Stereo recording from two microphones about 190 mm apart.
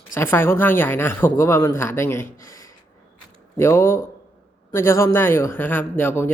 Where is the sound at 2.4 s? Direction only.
15° left (ahead or behind).